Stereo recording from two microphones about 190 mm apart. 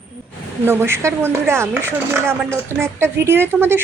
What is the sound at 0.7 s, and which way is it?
Speech, 10° right (ahead or behind).